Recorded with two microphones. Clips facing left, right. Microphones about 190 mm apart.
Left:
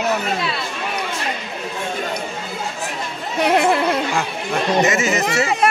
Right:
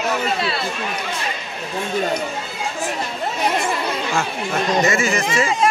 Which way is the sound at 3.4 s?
65° left (ahead or behind).